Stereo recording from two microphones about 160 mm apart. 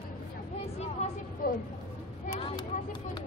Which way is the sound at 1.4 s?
65° left (ahead or behind).